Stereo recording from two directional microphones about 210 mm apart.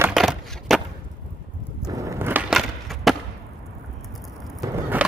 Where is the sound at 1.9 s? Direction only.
15° right (ahead or behind).